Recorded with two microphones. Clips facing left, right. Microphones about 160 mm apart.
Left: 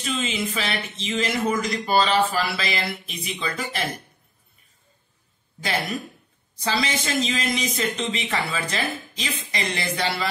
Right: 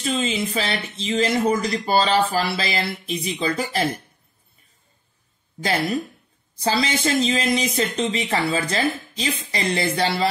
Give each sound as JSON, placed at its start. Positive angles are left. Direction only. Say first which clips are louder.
{"t": 0.0, "sound": "speech", "louder": "right 3 dB", "side_deg": -35}
{"t": 5.6, "sound": "speech", "louder": "right 5 dB", "side_deg": -40}